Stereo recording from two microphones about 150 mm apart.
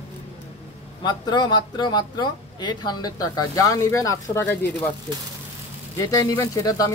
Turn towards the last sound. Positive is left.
turn(degrees=20)  # may be behind; listen again after turning